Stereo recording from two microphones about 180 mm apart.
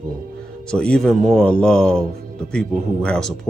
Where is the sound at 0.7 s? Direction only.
5° left (ahead or behind).